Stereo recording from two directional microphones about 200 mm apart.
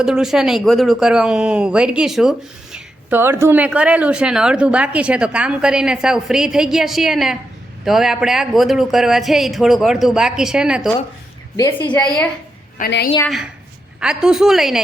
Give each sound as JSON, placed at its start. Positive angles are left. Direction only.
{"t": 0.0, "sound": "speech", "side_deg": -5}
{"t": 11.5, "sound": "a woman's voice", "side_deg": 20}
{"t": 11.9, "sound": "speech", "side_deg": 5}
{"t": 12.8, "sound": "a woman's voice", "side_deg": 40}
{"t": 13.2, "sound": "speech", "side_deg": 0}